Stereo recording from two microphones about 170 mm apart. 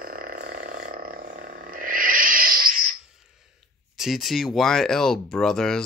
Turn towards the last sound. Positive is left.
turn(degrees=5)  # may be behind; listen again after turning